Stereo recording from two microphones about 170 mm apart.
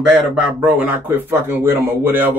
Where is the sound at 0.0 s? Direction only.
5° right (ahead or behind).